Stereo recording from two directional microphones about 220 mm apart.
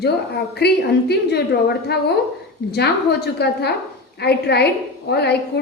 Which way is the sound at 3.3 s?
50° left (ahead or behind).